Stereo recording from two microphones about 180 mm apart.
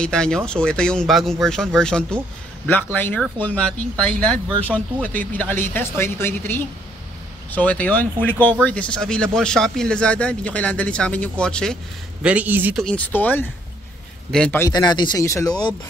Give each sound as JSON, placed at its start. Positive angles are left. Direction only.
{"t": 0.0, "sound": "speech", "side_deg": 5}
{"t": 12.2, "sound": "speech", "side_deg": -5}
{"t": 12.7, "sound": "speech", "side_deg": 5}
{"t": 14.6, "sound": "speech", "side_deg": 25}